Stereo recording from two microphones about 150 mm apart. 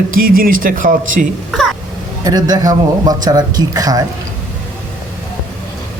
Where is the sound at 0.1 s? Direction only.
70° right (ahead or behind).